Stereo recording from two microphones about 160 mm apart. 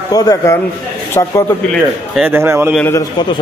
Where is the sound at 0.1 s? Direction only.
20° left (ahead or behind).